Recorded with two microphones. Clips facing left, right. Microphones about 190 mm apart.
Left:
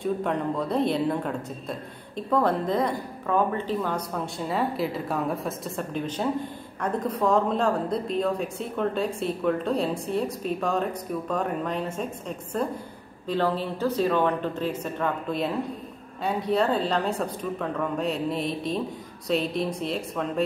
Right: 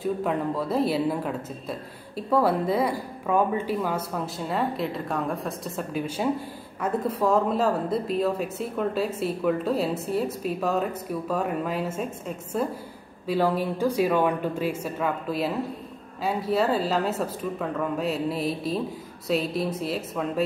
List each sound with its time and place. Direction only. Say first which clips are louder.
0.0 s speech: even; 5° right (ahead or behind)